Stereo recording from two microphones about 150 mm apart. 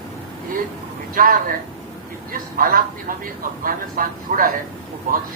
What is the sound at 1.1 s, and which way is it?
Speech, 65° right (ahead or behind).